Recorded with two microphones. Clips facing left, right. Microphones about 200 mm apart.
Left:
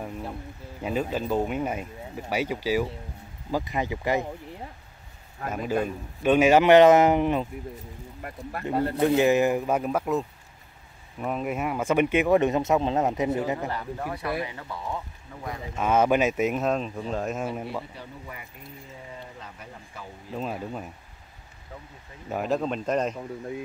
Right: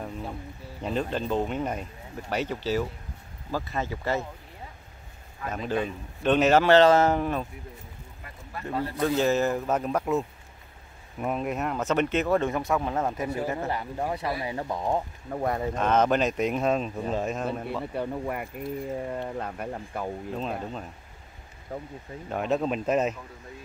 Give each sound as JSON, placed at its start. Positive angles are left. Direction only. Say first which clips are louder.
{"t": 0.0, "sound": "a sound", "louder": "left 1 dB", "side_deg": 5}
{"t": 0.8, "sound": "speech", "louder": "left 1 dB", "side_deg": 10}
{"t": 5.5, "sound": "speech", "louder": "left 2 dB", "side_deg": 10}
{"t": 8.2, "sound": "speech", "louder": "left 6 dB", "side_deg": 60}
{"t": 8.9, "sound": "speech", "louder": "left 3 dB", "side_deg": 20}
{"t": 13.7, "sound": "speech", "louder": "right 2 dB", "side_deg": -20}
{"t": 14.5, "sound": "speech", "louder": "right 7 dB", "side_deg": -40}
{"t": 15.7, "sound": "speech", "louder": "left 3 dB", "side_deg": 10}
{"t": 17.9, "sound": "speech", "louder": "right 11 dB", "side_deg": -55}
{"t": 20.3, "sound": "speech", "louder": "left 6 dB", "side_deg": 5}
{"t": 21.7, "sound": "speech", "louder": "right 8 dB", "side_deg": -45}
{"t": 22.3, "sound": "speech", "louder": "even", "side_deg": 0}